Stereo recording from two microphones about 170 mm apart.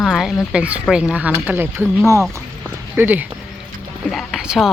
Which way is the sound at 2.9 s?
10° right (ahead or behind).